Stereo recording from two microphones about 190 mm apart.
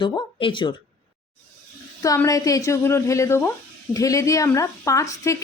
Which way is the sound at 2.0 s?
15° left (ahead or behind).